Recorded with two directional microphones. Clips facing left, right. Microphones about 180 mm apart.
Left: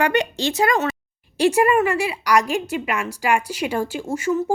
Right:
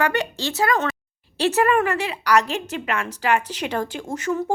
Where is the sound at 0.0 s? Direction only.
15° left (ahead or behind).